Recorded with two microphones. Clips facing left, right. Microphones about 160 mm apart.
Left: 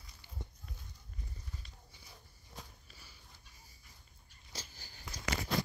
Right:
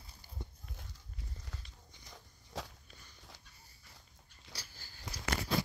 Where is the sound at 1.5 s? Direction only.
90° right.